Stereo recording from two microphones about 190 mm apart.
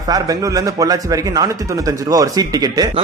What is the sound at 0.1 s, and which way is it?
Speech, 20° right (ahead or behind).